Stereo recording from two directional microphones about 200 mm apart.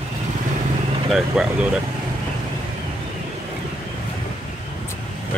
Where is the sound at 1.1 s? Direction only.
5° right (ahead or behind).